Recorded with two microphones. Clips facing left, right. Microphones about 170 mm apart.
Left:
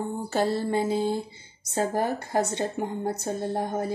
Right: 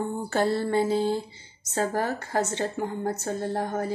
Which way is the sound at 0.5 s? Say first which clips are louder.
Right 1 dB; 10° left (ahead or behind).